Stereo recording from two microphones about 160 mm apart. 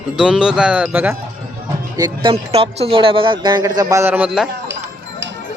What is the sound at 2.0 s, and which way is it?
Speech, 25° right (ahead or behind).